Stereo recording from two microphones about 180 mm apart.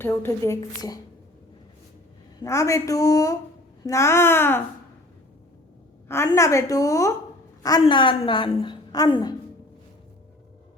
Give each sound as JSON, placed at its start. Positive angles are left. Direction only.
{"t": 0.0, "sound": "a woman's voice", "side_deg": 10}
{"t": 2.4, "sound": "a woman's voice", "side_deg": 15}
{"t": 6.1, "sound": "a woman's voice", "side_deg": 15}